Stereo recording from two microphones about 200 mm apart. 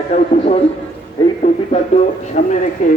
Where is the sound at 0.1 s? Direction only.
35° left (ahead or behind).